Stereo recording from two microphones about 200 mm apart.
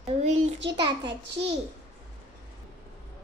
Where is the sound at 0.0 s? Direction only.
35° right (ahead or behind).